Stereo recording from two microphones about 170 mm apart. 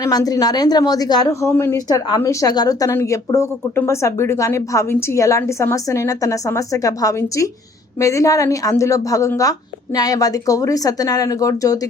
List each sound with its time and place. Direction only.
0.0 s a woman's voice: 20° left (ahead or behind)